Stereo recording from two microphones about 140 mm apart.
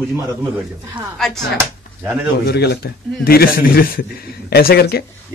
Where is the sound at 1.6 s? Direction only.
15° right (ahead or behind).